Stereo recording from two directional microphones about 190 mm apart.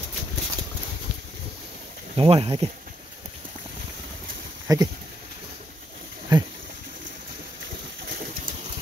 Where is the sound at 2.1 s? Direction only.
30° right (ahead or behind).